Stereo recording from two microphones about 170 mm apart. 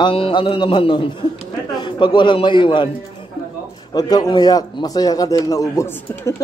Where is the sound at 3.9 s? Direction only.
20° left (ahead or behind).